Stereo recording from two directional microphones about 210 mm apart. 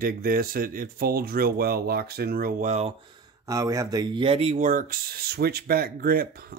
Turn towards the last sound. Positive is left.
turn(degrees=-45)  # may be behind; listen again after turning